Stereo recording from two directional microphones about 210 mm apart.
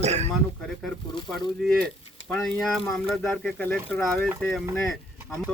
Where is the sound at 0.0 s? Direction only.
30° right (ahead or behind).